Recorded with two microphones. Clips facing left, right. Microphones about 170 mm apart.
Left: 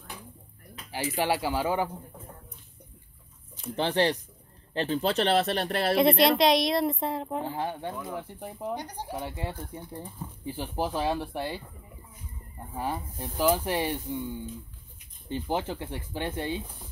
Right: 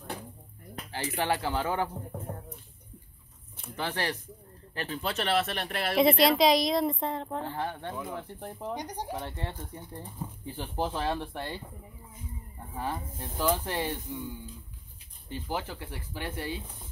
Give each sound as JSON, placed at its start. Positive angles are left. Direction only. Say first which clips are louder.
{"t": 0.9, "sound": "speech", "louder": "left 2 dB", "side_deg": 10}
{"t": 3.7, "sound": "speech", "louder": "left 7 dB", "side_deg": 25}
{"t": 5.9, "sound": "a woman's voice", "louder": "even", "side_deg": 0}
{"t": 7.9, "sound": "a woman's voice", "louder": "left 1 dB", "side_deg": 5}
{"t": 8.7, "sound": "speech", "louder": "even", "side_deg": -15}
{"t": 9.1, "sound": "speech", "louder": "left 2 dB", "side_deg": 10}
{"t": 12.7, "sound": "speech", "louder": "left 2 dB", "side_deg": 10}
{"t": 15.2, "sound": "speech", "louder": "left 5 dB", "side_deg": 20}